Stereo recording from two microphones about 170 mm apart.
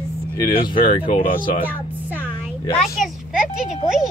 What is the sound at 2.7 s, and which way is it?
Speech, centre (ahead or behind).